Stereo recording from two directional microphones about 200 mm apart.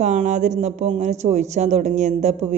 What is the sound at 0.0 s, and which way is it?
A man's voice, 40° right (ahead or behind).